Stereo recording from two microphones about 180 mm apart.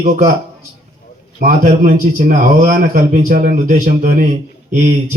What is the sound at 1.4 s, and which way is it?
A man's voice, 50° right (ahead or behind).